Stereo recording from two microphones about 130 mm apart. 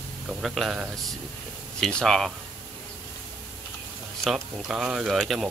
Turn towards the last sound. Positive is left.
turn(degrees=0)  # may be behind; listen again after turning